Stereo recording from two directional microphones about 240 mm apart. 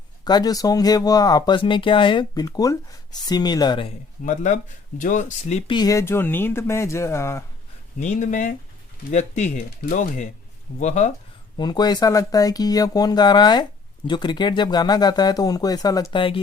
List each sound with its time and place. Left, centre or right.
0.3 s speech: centre
4.2 s speech: left; by 7.4 s centre
7.9 s speech: left
11.5 s speech: centre